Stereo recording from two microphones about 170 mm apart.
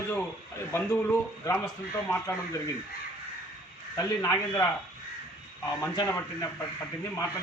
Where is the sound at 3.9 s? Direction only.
15° left (ahead or behind).